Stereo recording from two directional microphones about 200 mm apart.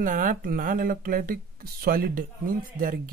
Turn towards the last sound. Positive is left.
turn(degrees=-45)  # may be behind; listen again after turning